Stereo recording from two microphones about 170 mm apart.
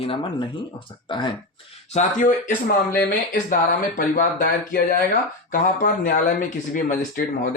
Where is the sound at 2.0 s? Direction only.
50° left (ahead or behind).